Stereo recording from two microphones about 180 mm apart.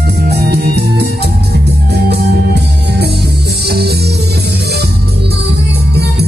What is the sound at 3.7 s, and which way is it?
Music, 65° right (ahead or behind).